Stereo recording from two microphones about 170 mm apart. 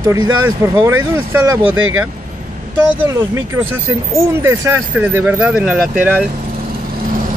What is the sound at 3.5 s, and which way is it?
Speech, 15° right (ahead or behind).